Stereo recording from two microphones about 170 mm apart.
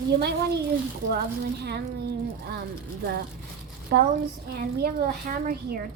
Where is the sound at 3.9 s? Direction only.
65° right (ahead or behind).